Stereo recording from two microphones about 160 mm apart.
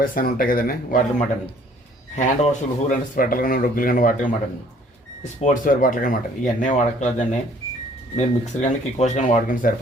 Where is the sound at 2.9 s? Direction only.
60° left (ahead or behind).